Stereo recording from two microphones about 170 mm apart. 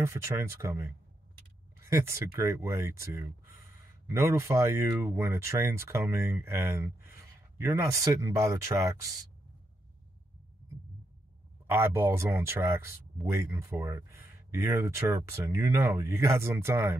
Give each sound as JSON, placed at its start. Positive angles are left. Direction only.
{"t": 0.0, "sound": "speech", "side_deg": -15}
{"t": 11.6, "sound": "speech", "side_deg": -15}